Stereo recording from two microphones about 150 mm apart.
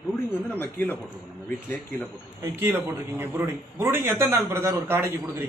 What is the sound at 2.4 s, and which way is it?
A man's voice, 15° right (ahead or behind).